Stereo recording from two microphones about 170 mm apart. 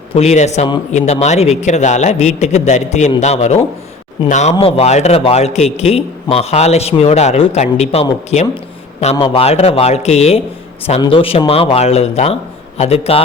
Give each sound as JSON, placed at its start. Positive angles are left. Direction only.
{"t": 0.1, "sound": "a man's voice", "side_deg": 40}